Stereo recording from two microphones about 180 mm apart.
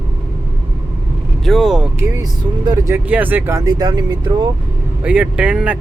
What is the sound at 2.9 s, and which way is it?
Speech, 10° right (ahead or behind).